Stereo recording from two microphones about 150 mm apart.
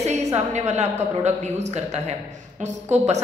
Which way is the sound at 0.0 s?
50° right (ahead or behind).